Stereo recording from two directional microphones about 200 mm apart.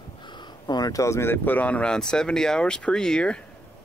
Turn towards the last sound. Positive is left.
turn(degrees=5)  # may be behind; listen again after turning